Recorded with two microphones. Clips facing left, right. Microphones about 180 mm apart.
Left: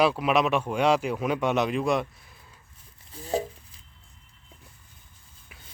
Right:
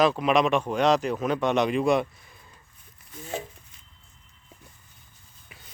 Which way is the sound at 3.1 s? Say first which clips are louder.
Left 6 dB; 35° left (ahead or behind).